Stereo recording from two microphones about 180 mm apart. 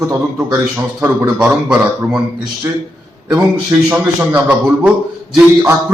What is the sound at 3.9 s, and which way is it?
A man's voice, 10° right (ahead or behind).